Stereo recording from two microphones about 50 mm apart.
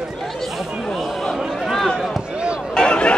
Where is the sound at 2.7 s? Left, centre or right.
Centre.